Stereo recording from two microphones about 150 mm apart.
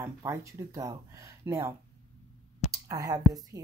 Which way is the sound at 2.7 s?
25° right (ahead or behind).